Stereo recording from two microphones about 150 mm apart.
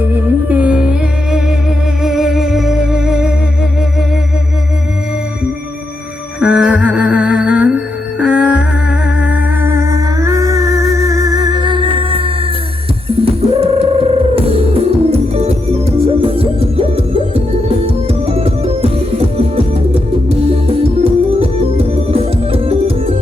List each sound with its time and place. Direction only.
0.1 s music: 10° right (ahead or behind)
6.4 s music: 5° right (ahead or behind)
8.2 s humming: 5° right (ahead or behind); by 12.3 s 35° right (ahead or behind)
13.1 s music: 40° right (ahead or behind)